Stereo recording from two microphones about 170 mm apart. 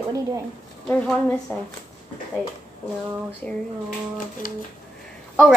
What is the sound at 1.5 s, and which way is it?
Speech, 10° left (ahead or behind).